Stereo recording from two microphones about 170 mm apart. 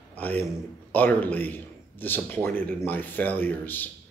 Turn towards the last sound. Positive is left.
turn(degrees=10)  # may be behind; listen again after turning